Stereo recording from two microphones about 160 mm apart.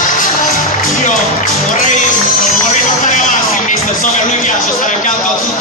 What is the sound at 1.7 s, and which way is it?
Music, 55° left (ahead or behind).